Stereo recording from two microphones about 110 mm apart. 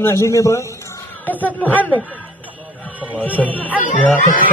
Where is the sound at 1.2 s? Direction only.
15° left (ahead or behind).